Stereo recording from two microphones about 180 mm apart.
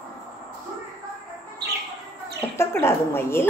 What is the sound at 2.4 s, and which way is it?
Speech, 15° left (ahead or behind).